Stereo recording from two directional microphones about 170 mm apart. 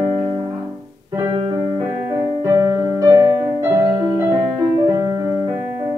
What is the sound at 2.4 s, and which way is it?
Keyboard, 20° right (ahead or behind).